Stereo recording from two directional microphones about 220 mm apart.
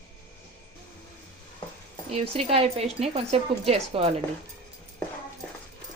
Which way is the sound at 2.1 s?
25° right (ahead or behind).